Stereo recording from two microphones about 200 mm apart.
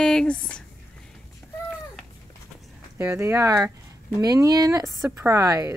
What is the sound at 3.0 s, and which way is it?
Speech, 10° right (ahead or behind).